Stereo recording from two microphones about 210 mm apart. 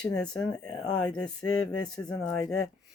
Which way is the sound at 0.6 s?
20° left (ahead or behind).